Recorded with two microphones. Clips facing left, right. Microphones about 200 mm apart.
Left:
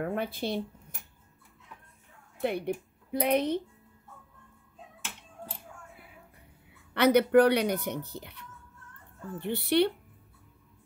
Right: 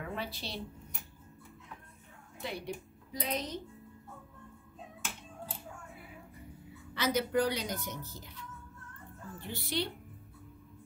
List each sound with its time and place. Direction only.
0.0 s speech: 55° left (ahead or behind)
2.4 s a woman's voice: 55° left (ahead or behind)
6.9 s speech: 65° left (ahead or behind)